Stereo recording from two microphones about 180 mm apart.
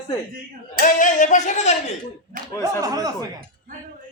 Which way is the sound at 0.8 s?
45° left (ahead or behind).